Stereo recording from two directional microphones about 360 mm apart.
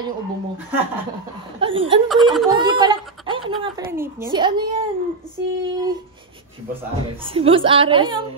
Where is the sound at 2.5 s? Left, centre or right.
Centre.